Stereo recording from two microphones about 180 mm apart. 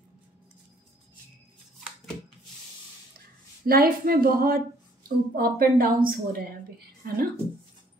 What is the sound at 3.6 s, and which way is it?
Speech, 55° right (ahead or behind).